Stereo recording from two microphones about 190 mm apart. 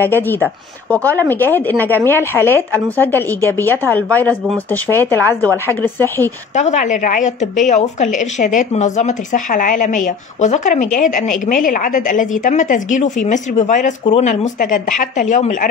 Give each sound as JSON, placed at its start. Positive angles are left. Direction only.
{"t": 0.0, "sound": "a woman's voice", "side_deg": 10}
{"t": 6.5, "sound": "a woman's voice", "side_deg": 40}